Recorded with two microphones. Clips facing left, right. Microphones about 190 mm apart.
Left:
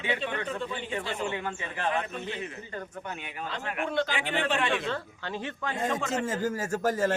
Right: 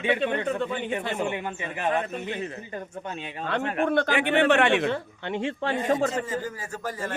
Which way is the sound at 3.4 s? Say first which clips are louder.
Right 8 dB; 65° right (ahead or behind).